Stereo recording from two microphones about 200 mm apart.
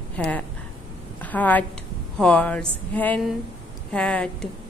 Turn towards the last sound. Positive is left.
turn(degrees=5)  # may be behind; listen again after turning